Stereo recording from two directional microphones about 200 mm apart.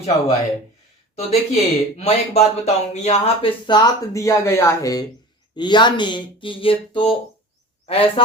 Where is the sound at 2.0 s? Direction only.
35° left (ahead or behind).